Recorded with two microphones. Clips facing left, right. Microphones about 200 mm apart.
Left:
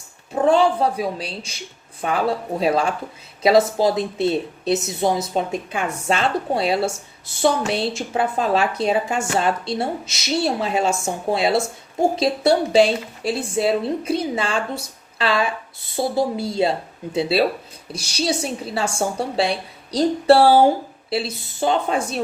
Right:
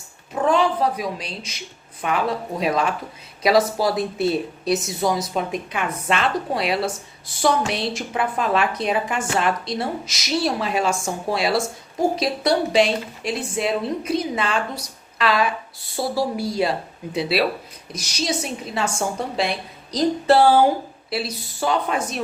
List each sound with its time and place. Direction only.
0.4 s a woman's voice: 30° left (ahead or behind)